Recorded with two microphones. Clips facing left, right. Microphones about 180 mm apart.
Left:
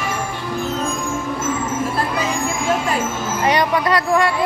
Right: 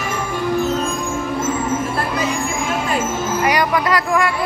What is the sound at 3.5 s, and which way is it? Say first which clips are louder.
Speech: left 2 dB; 30° left (ahead or behind).